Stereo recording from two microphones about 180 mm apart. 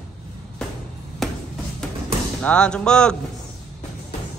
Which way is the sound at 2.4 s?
5° left (ahead or behind).